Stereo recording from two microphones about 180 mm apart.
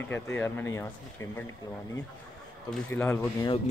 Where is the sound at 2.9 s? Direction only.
10° left (ahead or behind).